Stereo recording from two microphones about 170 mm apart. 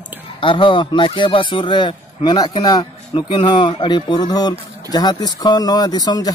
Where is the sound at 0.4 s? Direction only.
30° left (ahead or behind).